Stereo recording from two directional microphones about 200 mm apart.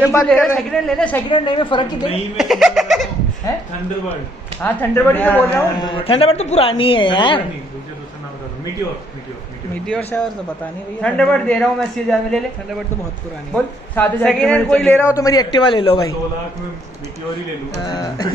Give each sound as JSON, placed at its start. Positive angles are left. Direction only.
{"t": 0.1, "sound": "a man's voice", "side_deg": 5}
{"t": 1.3, "sound": "a man's voice", "side_deg": 25}
{"t": 2.3, "sound": "speech", "side_deg": 0}
{"t": 4.6, "sound": "a man's voice", "side_deg": 10}
{"t": 9.8, "sound": "a man's voice", "side_deg": 5}
{"t": 13.9, "sound": "a man's voice", "side_deg": 10}
{"t": 17.8, "sound": "a man's voice", "side_deg": 20}